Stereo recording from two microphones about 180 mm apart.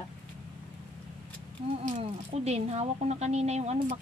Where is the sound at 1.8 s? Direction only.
40° right (ahead or behind).